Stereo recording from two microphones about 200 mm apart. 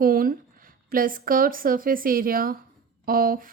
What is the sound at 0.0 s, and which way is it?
Speech, 45° right (ahead or behind).